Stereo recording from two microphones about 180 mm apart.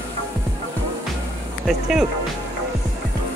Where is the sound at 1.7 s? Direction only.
Centre (ahead or behind).